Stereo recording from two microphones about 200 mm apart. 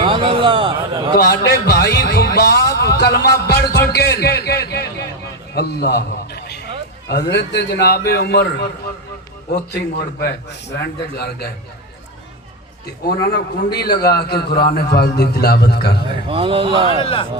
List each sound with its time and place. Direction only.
0.0 s a man's voice: 25° right (ahead or behind)
1.1 s a sound: 55° left (ahead or behind)
5.5 s a man's voice: 55° left (ahead or behind)
13.3 s a man's voice: 55° left (ahead or behind)
16.3 s speech: 25° right (ahead or behind)
17.0 s speech: 25° left (ahead or behind)